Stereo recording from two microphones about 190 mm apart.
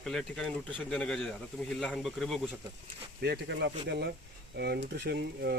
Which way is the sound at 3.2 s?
65° right (ahead or behind).